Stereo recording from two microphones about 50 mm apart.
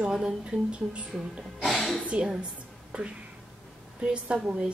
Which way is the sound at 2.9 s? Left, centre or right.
Right.